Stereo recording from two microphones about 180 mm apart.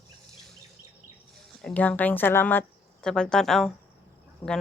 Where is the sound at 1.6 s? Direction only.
10° left (ahead or behind).